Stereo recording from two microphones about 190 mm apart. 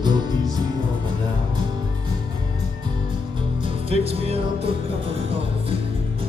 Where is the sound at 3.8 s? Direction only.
30° right (ahead or behind).